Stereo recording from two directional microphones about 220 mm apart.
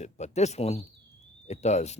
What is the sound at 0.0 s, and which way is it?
Speech, 30° left (ahead or behind).